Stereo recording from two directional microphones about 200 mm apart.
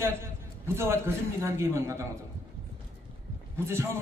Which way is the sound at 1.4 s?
15° right (ahead or behind).